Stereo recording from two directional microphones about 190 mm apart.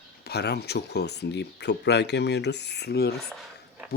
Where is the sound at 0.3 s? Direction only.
60° left (ahead or behind).